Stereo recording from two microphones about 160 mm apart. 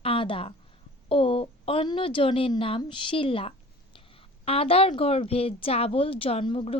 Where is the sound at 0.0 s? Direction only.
35° left (ahead or behind).